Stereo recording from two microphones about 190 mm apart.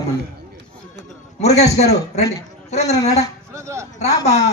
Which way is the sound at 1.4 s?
35° left (ahead or behind).